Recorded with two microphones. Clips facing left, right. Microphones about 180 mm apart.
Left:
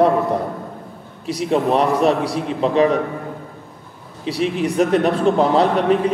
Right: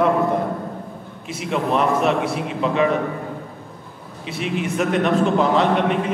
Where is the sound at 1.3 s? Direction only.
35° left (ahead or behind).